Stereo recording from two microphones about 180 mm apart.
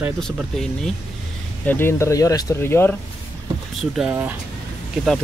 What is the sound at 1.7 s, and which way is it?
Speech, 15° left (ahead or behind).